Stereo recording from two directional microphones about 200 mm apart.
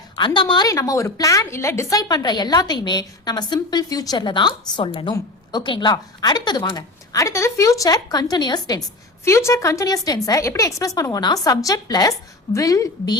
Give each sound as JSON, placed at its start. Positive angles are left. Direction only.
{"t": 0.2, "sound": "a woman's voice", "side_deg": 25}